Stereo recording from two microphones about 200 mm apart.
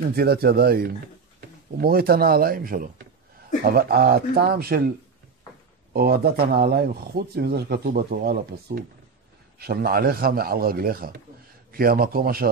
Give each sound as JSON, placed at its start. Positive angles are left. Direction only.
{"t": 0.1, "sound": "speech", "side_deg": -50}
{"t": 5.9, "sound": "speech", "side_deg": -50}